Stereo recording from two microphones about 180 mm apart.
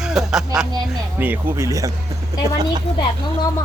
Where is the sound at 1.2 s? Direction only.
10° right (ahead or behind).